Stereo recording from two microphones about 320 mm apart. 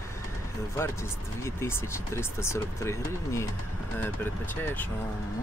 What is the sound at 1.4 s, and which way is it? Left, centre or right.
Speech, centre.